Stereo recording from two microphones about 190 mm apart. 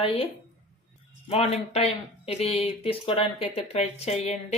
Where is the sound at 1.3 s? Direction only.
35° left (ahead or behind).